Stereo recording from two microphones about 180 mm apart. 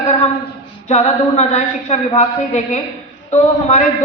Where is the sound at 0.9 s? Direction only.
40° left (ahead or behind).